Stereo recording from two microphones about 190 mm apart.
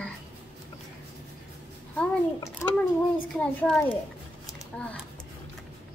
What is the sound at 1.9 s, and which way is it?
Babbling, 15° left (ahead or behind).